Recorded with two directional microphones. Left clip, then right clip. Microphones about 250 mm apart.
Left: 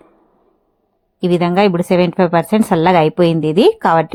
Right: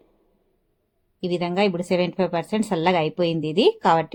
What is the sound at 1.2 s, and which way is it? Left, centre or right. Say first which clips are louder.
A woman's voice: left 9 dB; left.